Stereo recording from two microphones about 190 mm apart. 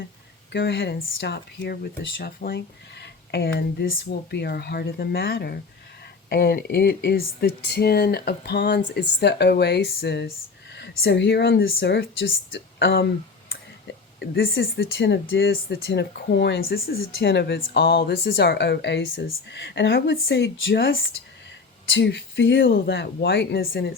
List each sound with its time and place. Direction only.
0.5 s speech: 60° left (ahead or behind)
21.8 s speech: 65° left (ahead or behind)